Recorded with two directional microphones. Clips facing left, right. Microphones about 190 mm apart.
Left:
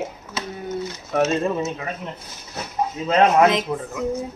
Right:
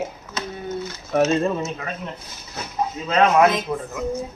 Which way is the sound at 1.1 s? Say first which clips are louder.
Right 2 dB; 5° left (ahead or behind).